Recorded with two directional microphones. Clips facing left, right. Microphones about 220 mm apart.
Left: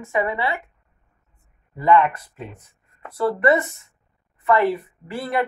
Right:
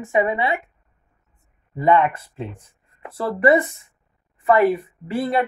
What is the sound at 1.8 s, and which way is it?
A woman's voice, 20° right (ahead or behind).